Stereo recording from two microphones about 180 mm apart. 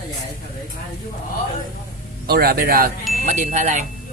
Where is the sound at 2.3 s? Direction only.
60° right (ahead or behind).